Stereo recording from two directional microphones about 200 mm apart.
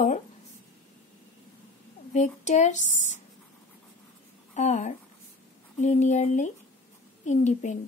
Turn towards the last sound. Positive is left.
turn(degrees=35)  # may be behind; listen again after turning